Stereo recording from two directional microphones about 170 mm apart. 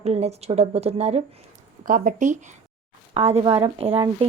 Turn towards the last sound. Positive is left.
turn(degrees=-35)  # may be behind; listen again after turning